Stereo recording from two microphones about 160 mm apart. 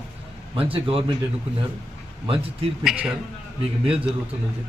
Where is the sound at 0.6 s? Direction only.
35° right (ahead or behind).